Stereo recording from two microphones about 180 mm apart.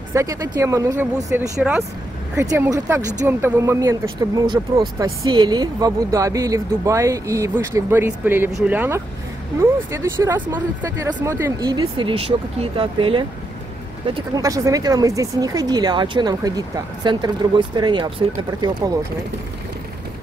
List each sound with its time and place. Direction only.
0.1 s speech: 20° right (ahead or behind)
14.3 s speech: 20° right (ahead or behind)